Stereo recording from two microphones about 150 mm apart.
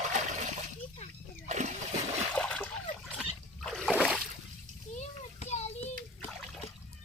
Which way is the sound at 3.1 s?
Centre (ahead or behind).